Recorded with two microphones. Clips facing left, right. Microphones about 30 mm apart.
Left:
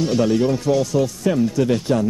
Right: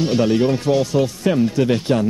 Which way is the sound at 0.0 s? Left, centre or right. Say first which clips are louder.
Right 1 dB; right.